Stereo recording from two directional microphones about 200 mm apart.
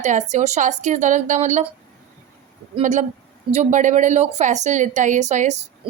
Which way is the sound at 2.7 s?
35° right (ahead or behind).